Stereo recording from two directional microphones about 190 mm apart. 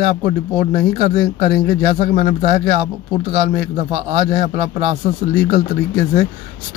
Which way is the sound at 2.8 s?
30° right (ahead or behind).